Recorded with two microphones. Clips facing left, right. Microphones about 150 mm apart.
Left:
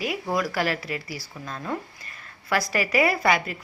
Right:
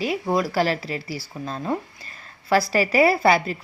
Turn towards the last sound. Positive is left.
turn(degrees=-30)  # may be behind; listen again after turning